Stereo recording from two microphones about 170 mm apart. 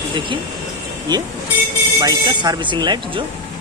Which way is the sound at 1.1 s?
25° right (ahead or behind).